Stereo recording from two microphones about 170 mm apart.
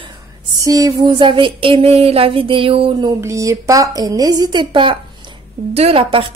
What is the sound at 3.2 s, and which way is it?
A woman's voice, 20° right (ahead or behind).